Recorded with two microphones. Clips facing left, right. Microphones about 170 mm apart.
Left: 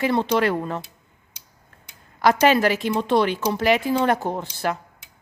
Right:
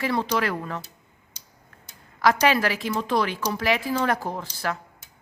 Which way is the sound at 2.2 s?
25° left (ahead or behind).